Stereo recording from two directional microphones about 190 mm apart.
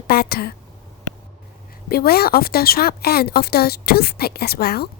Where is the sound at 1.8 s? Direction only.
55° left (ahead or behind).